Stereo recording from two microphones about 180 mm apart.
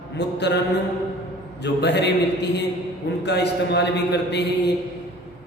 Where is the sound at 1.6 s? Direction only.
70° left (ahead or behind).